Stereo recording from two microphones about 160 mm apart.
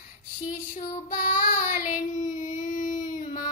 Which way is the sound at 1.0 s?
50° left (ahead or behind).